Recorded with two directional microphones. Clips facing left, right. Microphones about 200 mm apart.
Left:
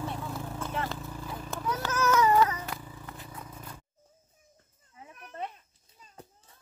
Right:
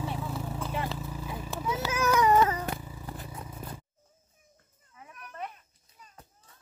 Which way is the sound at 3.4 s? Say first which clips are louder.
Right 3 dB; 10° right (ahead or behind).